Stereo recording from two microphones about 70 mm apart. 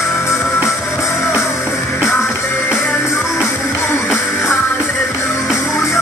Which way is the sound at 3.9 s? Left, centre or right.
Left.